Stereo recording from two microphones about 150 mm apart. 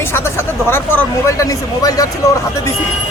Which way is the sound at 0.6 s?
15° left (ahead or behind).